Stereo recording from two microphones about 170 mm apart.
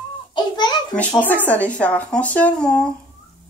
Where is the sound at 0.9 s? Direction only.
5° left (ahead or behind).